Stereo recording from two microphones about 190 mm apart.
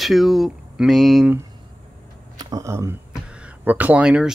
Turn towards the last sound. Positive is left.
turn(degrees=-5)  # may be behind; listen again after turning